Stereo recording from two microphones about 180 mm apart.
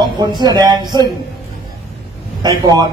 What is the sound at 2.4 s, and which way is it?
Speech, 20° right (ahead or behind).